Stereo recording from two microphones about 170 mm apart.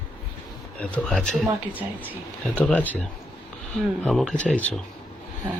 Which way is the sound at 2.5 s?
10° left (ahead or behind).